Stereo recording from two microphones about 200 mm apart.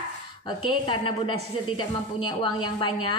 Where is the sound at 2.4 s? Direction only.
25° left (ahead or behind).